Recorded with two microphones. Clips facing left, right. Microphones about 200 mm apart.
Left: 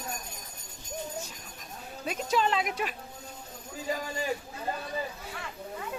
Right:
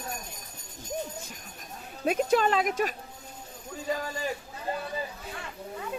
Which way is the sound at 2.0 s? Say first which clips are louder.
Right 5 dB; 55° right (ahead or behind).